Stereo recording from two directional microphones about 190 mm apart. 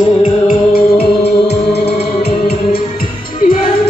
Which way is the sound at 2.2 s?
55° left (ahead or behind).